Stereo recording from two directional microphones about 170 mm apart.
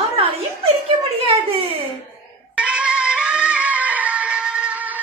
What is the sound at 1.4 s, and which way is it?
Speech, 35° right (ahead or behind).